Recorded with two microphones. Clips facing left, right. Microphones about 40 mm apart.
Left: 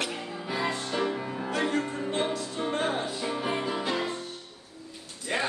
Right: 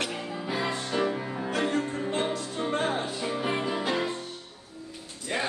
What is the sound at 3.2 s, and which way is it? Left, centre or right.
Music, centre.